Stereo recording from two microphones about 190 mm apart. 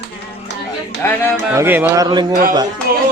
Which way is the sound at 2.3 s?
45° right (ahead or behind).